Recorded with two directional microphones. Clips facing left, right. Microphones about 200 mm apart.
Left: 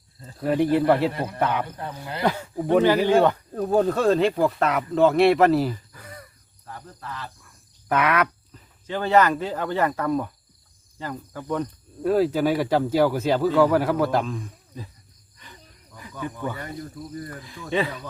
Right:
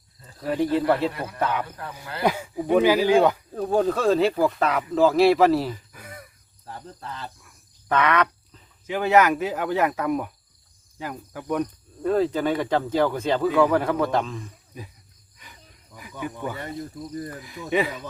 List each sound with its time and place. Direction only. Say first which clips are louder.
0.3 s speech: left 3 dB; 10° left (ahead or behind)
2.2 s speech: even; 10° right (ahead or behind)
5.9 s a sound: even; 10° right (ahead or behind)
6.7 s speech: right 1 dB; 25° right (ahead or behind)
7.9 s speech: even; 10° left (ahead or behind)
8.9 s speech: right 1 dB; 10° right (ahead or behind)
12.0 s speech: left 2 dB; 5° left (ahead or behind)
16.2 s speech: even; 10° right (ahead or behind)